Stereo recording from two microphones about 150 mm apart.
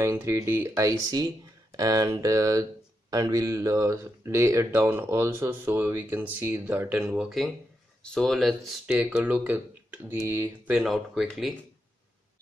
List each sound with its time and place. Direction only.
0.0 s speech: 15° right (ahead or behind)
10.7 s speech: centre (ahead or behind)